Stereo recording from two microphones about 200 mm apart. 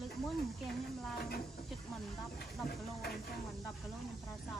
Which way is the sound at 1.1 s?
50° left (ahead or behind).